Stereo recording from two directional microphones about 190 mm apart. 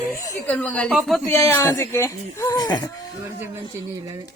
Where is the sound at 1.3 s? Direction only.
15° left (ahead or behind).